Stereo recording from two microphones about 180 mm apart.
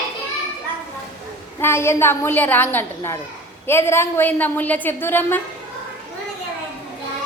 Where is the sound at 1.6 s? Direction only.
15° left (ahead or behind).